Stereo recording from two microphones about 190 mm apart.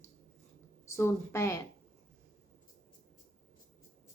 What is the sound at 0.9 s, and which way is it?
Speech, 15° left (ahead or behind).